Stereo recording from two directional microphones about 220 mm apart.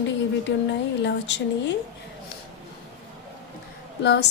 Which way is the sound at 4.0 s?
50° left (ahead or behind).